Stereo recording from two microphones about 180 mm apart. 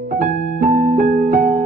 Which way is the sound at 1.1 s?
55° right (ahead or behind).